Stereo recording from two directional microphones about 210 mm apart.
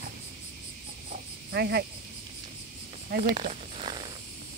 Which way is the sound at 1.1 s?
50° right (ahead or behind).